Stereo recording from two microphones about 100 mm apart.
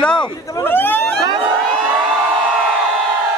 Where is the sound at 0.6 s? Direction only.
20° left (ahead or behind).